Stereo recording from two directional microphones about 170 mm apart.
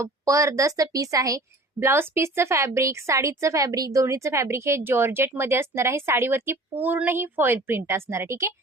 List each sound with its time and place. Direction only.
0.0 s a woman's voice: 20° right (ahead or behind)